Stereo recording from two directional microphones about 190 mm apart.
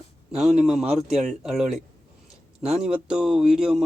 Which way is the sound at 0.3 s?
Centre (ahead or behind).